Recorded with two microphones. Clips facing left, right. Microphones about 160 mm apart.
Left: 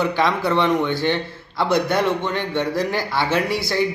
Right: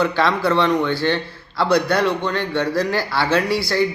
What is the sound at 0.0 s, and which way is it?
A man's voice, 15° left (ahead or behind).